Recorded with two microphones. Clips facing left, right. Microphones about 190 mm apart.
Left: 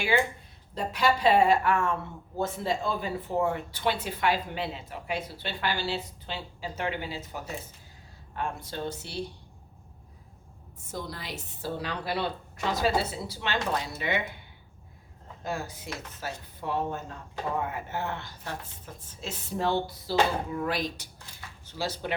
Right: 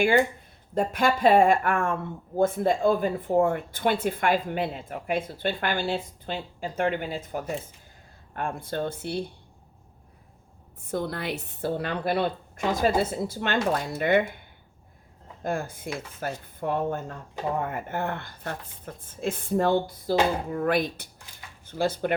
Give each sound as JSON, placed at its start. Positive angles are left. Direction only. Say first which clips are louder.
{"t": 0.7, "sound": "a woman's voice", "louder": "right 3 dB", "side_deg": -50}
{"t": 10.9, "sound": "a woman's voice", "louder": "right 8 dB", "side_deg": -60}
{"t": 15.4, "sound": "a woman's voice", "louder": "right 5 dB", "side_deg": -50}